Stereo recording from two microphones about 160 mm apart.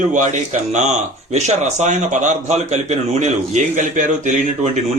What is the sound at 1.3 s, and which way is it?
Speech, 45° right (ahead or behind).